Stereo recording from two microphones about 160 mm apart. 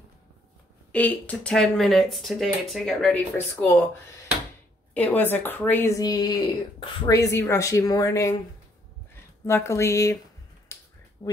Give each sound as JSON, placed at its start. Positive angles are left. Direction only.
{"t": 0.9, "sound": "speech", "side_deg": 10}
{"t": 4.9, "sound": "a woman's voice", "side_deg": 10}
{"t": 5.9, "sound": "speech", "side_deg": 25}
{"t": 7.1, "sound": "speech", "side_deg": 20}
{"t": 10.7, "sound": "finger snapping", "side_deg": 20}